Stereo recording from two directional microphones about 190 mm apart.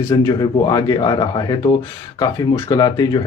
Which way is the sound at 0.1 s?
20° left (ahead or behind).